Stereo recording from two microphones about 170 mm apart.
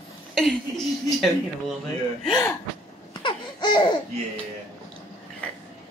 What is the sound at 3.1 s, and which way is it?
Laughter, 25° left (ahead or behind).